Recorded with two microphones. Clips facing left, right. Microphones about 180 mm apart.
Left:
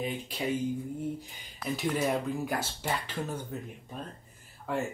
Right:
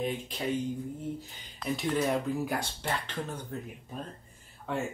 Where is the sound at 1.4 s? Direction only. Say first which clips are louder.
Even; centre (ahead or behind).